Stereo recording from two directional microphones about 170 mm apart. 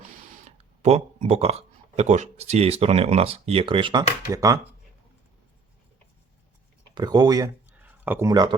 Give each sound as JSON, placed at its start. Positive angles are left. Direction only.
{"t": 0.4, "sound": "speech", "side_deg": -40}
{"t": 6.9, "sound": "speech", "side_deg": -25}
{"t": 7.8, "sound": "a sound", "side_deg": -10}
{"t": 8.3, "sound": "speech", "side_deg": -25}